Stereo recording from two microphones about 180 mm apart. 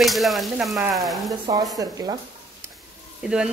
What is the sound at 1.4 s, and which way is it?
Speech, 20° right (ahead or behind).